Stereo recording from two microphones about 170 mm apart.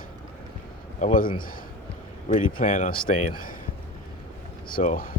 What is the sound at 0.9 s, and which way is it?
Speech, 50° left (ahead or behind).